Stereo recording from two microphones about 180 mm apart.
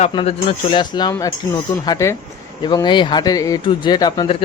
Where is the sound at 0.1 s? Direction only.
30° left (ahead or behind).